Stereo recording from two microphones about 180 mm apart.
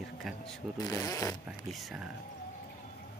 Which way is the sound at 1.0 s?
20° left (ahead or behind).